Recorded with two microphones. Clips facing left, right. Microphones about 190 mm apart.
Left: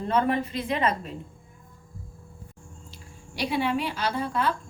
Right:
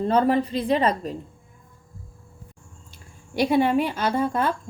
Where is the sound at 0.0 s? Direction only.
35° right (ahead or behind).